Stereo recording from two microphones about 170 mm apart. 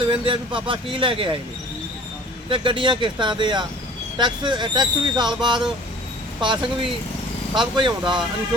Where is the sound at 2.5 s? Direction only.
30° right (ahead or behind).